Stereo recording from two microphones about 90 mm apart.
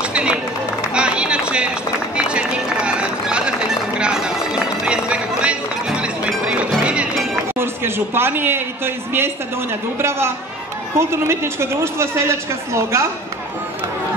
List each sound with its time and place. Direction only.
0.0 s run: 10° right (ahead or behind)
6.8 s music: 10° right (ahead or behind)
7.5 s a woman's voice: 25° right (ahead or behind)